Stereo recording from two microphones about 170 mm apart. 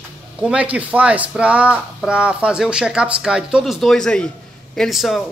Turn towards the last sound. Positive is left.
turn(degrees=0)  # may be behind; listen again after turning